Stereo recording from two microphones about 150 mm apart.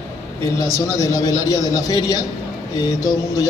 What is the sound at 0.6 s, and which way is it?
A man's voice, 20° left (ahead or behind).